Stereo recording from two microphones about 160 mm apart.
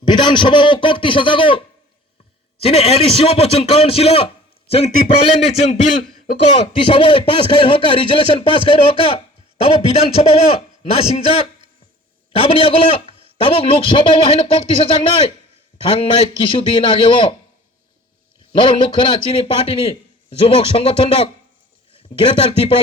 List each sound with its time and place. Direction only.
0.0 s speech: 30° left (ahead or behind)
15.9 s speech: 35° left (ahead or behind)
18.5 s speech: 30° left (ahead or behind)